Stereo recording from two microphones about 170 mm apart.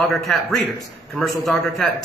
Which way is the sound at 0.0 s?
Centre (ahead or behind).